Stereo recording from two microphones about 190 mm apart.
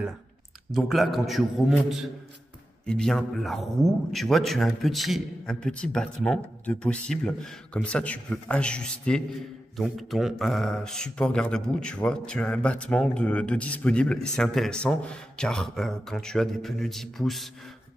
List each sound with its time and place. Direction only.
0.7 s speech: centre (ahead or behind)